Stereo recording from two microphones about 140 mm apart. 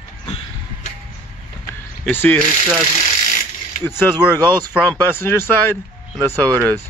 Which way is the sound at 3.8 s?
15° left (ahead or behind).